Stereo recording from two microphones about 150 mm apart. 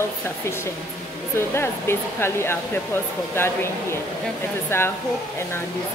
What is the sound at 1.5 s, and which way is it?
Speech, 15° left (ahead or behind).